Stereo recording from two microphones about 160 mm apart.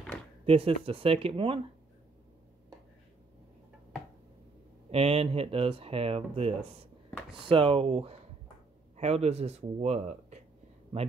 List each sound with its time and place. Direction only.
0.5 s speech: 35° right (ahead or behind)
4.9 s speech: 40° right (ahead or behind)